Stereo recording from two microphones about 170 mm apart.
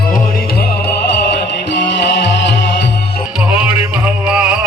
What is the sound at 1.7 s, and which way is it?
Music, 90° left.